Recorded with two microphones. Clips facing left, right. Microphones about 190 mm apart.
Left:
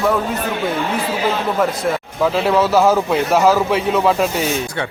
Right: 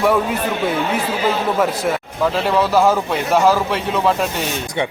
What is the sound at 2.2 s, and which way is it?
A man's voice, 5° left (ahead or behind).